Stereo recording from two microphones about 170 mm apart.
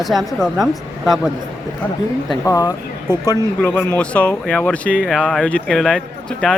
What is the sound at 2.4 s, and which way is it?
Speech, 20° left (ahead or behind).